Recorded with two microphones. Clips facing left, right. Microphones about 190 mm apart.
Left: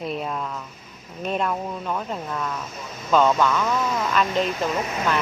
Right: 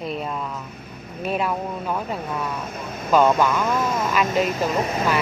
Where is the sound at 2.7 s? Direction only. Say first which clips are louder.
Right 5 dB; 55° right (ahead or behind).